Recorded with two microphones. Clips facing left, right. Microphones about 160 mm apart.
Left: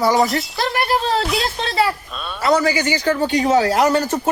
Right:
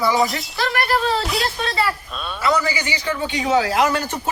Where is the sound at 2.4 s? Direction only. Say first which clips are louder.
Left 4 dB; 40° left (ahead or behind).